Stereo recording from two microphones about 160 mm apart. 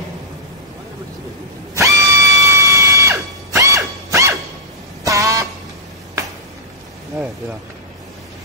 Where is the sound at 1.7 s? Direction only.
20° right (ahead or behind).